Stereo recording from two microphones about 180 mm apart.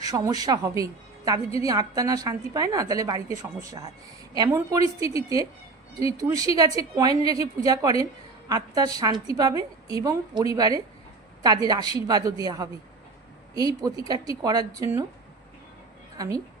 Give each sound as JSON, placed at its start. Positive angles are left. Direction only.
{"t": 0.0, "sound": "a woman's voice", "side_deg": -20}
{"t": 16.1, "sound": "a woman's voice", "side_deg": -20}